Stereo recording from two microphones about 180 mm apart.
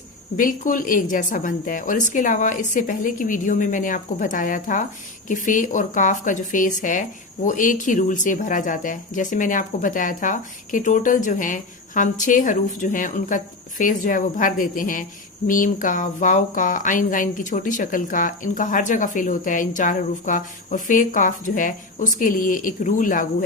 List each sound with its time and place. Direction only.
0.3 s speech: 50° left (ahead or behind)